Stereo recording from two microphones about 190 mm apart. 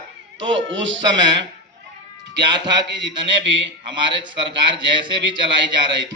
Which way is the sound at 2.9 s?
70° right (ahead or behind).